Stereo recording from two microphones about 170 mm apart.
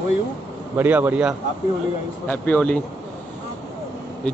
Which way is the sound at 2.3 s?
10° left (ahead or behind).